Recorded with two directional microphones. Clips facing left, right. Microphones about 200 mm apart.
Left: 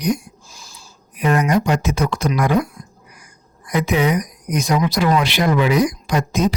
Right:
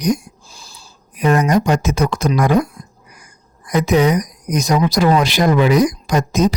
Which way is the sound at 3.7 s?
45° right (ahead or behind).